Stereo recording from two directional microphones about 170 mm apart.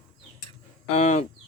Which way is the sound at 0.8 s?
45° left (ahead or behind).